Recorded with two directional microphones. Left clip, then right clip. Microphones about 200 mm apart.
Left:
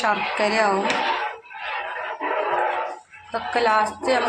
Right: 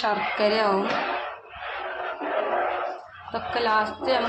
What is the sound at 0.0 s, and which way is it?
Speech, 20° left (ahead or behind).